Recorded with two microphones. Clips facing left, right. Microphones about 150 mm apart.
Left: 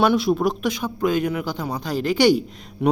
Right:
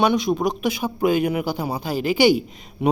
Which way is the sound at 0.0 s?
5° left (ahead or behind).